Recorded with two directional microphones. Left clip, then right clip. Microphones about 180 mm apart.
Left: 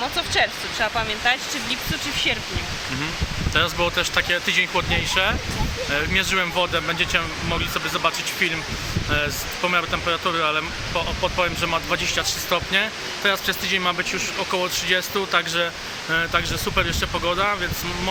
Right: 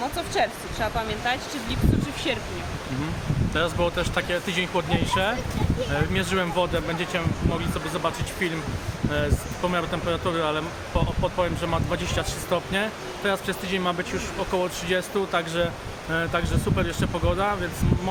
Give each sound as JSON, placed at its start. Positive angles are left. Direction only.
{"t": 0.2, "sound": "speech", "side_deg": 10}
{"t": 3.5, "sound": "speech", "side_deg": -15}